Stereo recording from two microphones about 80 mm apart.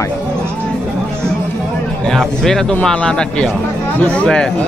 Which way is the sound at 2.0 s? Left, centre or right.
Centre.